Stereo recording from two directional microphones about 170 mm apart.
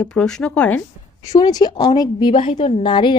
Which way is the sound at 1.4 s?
25° left (ahead or behind).